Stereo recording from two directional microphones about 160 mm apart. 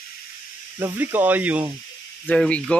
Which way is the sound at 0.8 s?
10° right (ahead or behind).